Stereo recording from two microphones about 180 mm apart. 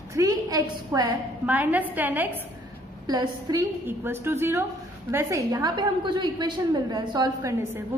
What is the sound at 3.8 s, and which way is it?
A woman's voice, 10° right (ahead or behind).